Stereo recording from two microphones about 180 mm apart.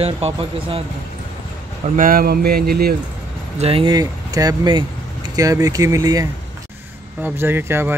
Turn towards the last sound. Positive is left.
turn(degrees=-10)  # may be behind; listen again after turning